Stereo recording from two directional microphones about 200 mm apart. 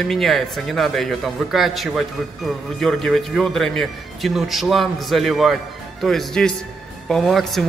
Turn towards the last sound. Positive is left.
turn(degrees=0)  # may be behind; listen again after turning